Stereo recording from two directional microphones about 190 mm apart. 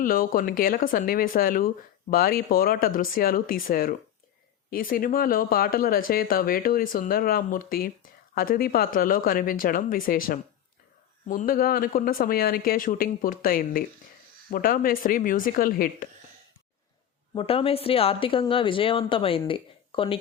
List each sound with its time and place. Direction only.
0.0 s speech: 50° left (ahead or behind)
17.3 s speech: 30° left (ahead or behind)